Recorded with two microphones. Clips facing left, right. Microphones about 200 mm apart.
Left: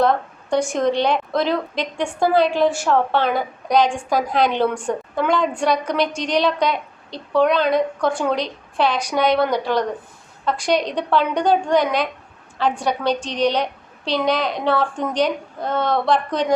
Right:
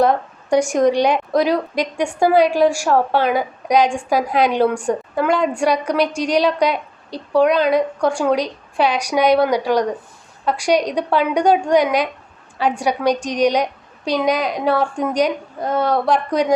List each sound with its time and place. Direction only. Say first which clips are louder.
0.0 s a woman's voice: right 2 dB; 15° right (ahead or behind)